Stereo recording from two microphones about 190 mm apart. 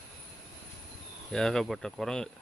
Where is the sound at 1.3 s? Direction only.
Centre (ahead or behind).